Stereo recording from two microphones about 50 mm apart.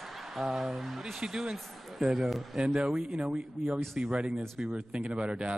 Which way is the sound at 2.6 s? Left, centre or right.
Centre.